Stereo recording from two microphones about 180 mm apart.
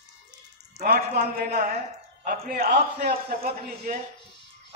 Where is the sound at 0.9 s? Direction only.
55° right (ahead or behind).